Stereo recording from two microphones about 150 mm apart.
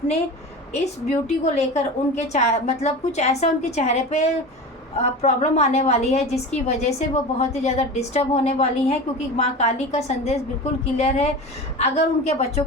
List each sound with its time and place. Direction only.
0.7 s a woman's voice: 45° left (ahead or behind)